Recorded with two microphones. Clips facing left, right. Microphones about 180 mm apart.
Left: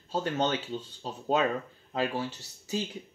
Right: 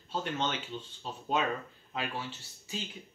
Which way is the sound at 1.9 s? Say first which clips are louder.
Left 7 dB; 40° left (ahead or behind).